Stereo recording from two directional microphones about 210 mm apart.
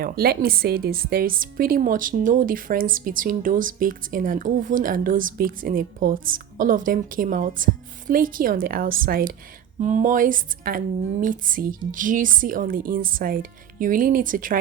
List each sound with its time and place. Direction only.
0.0 s a woman's voice: 45° right (ahead or behind)